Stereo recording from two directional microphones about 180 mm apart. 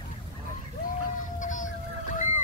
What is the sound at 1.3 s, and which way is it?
Whale vocalization, 45° left (ahead or behind).